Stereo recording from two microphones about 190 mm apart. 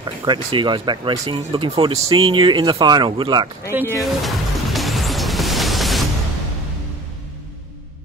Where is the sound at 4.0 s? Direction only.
Centre (ahead or behind).